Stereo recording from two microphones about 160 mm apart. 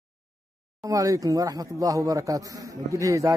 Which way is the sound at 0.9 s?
20° right (ahead or behind).